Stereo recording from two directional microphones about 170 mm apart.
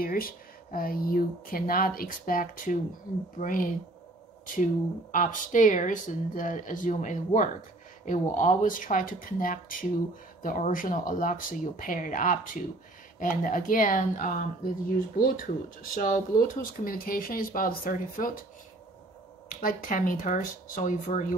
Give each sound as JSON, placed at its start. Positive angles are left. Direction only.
{"t": 0.0, "sound": "speech", "side_deg": 60}
{"t": 5.1, "sound": "speech", "side_deg": 50}
{"t": 19.5, "sound": "speech", "side_deg": 50}